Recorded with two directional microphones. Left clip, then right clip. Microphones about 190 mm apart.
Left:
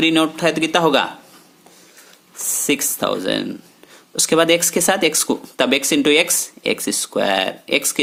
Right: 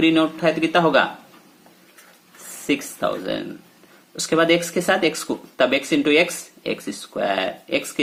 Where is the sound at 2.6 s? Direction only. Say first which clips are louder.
Left 2 dB; 45° left (ahead or behind).